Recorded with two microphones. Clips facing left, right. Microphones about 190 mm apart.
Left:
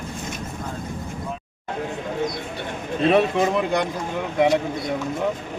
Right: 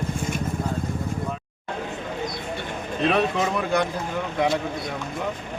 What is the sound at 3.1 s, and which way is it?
Speech, 20° left (ahead or behind).